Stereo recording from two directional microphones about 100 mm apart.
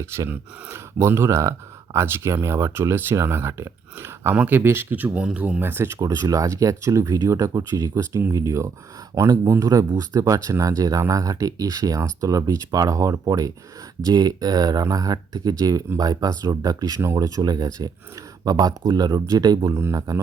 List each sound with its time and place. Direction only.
0.0 s speech: 25° right (ahead or behind)
6.0 s speech: 35° right (ahead or behind)